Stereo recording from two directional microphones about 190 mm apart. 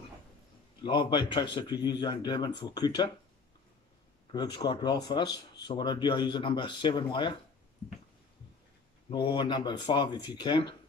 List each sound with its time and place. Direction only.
0.8 s speech: 25° left (ahead or behind)
4.3 s speech: 20° left (ahead or behind)
9.1 s speech: 25° left (ahead or behind)